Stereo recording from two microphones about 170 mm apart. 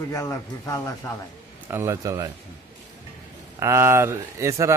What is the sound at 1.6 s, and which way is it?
Speech, 15° right (ahead or behind).